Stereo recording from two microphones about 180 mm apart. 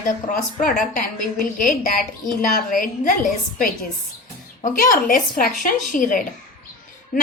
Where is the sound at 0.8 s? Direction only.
50° left (ahead or behind).